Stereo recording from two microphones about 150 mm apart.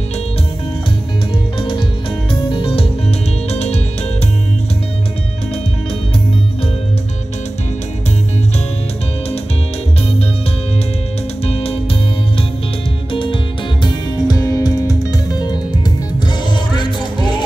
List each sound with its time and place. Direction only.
1.6 s music: 35° left (ahead or behind)
11.4 s music: 40° left (ahead or behind)
13.1 s music: 35° left (ahead or behind)